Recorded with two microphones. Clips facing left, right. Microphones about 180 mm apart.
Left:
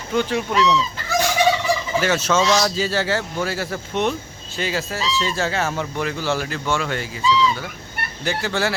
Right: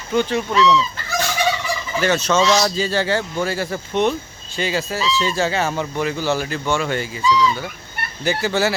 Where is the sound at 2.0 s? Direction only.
5° left (ahead or behind).